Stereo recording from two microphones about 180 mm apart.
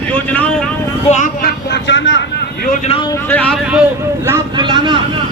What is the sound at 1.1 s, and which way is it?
Speech, 45° left (ahead or behind).